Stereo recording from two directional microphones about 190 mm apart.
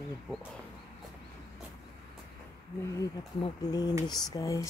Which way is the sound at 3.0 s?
20° left (ahead or behind).